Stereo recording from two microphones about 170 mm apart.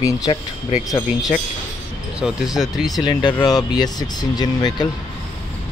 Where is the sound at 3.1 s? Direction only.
25° left (ahead or behind).